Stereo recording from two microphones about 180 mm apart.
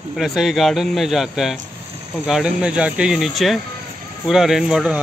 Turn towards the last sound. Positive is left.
turn(degrees=-5)  # may be behind; listen again after turning